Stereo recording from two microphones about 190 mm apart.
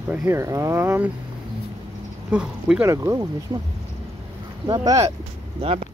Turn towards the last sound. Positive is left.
turn(degrees=-30)  # may be behind; listen again after turning